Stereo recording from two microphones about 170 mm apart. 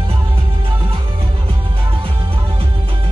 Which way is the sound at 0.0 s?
35° right (ahead or behind).